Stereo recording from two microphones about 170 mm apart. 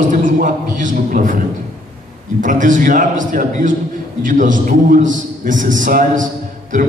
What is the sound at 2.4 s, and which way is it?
A man's voice, 50° right (ahead or behind).